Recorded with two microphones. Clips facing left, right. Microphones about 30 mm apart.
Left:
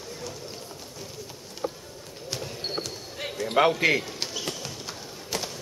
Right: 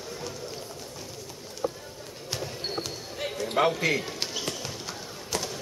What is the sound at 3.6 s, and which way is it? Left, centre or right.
Speech, centre.